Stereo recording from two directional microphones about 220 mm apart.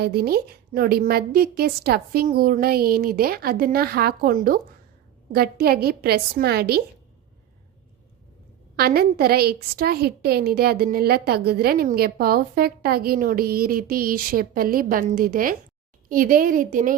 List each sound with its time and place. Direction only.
0.0 s a woman's voice: 45° right (ahead or behind)
8.7 s a woman's voice: 45° right (ahead or behind)